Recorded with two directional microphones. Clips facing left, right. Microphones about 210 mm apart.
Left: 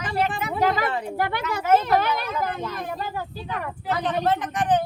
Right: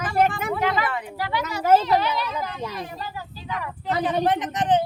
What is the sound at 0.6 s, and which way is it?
Speech, 40° left (ahead or behind).